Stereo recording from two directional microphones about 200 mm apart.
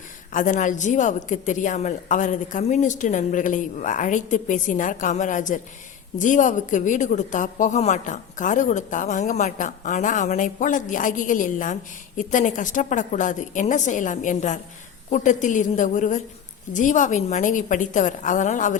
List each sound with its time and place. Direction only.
0.3 s a woman's voice: 40° left (ahead or behind)